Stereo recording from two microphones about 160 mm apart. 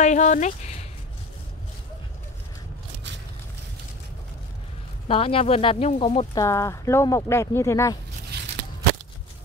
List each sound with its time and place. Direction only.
0.0 s speech: 50° left (ahead or behind)
5.0 s speech: 35° left (ahead or behind)
6.3 s speech: 20° left (ahead or behind)